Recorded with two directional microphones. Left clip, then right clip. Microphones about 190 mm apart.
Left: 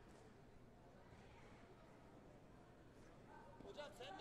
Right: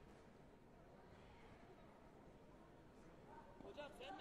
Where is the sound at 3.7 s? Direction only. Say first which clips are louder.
Left 1 dB; 50° right (ahead or behind).